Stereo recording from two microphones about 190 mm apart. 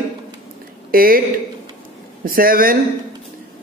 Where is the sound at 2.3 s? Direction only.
50° right (ahead or behind).